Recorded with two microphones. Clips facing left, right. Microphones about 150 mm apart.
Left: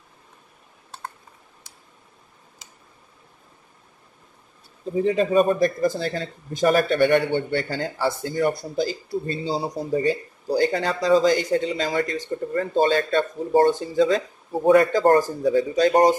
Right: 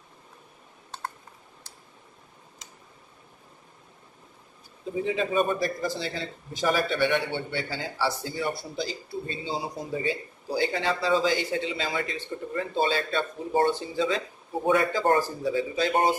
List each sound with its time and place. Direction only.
5.0 s speech: 45° left (ahead or behind)